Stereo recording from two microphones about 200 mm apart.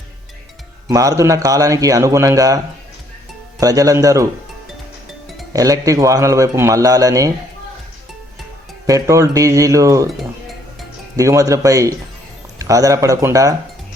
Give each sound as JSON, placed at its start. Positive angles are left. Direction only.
{"t": 0.9, "sound": "speech", "side_deg": -15}
{"t": 3.6, "sound": "speech", "side_deg": -15}
{"t": 5.5, "sound": "speech", "side_deg": -15}
{"t": 8.9, "sound": "speech", "side_deg": -15}
{"t": 11.2, "sound": "speech", "side_deg": -15}